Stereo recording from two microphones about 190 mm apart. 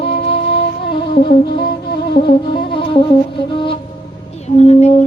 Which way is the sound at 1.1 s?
55° left (ahead or behind).